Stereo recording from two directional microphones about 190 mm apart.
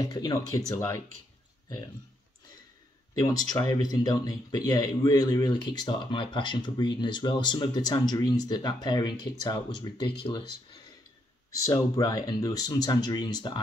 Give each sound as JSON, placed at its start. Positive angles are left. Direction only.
{"t": 0.0, "sound": "speech", "side_deg": 20}
{"t": 3.2, "sound": "speech", "side_deg": 20}
{"t": 11.6, "sound": "speech", "side_deg": 20}